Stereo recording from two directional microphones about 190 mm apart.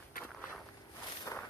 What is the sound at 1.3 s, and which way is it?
Walk, 15° left (ahead or behind).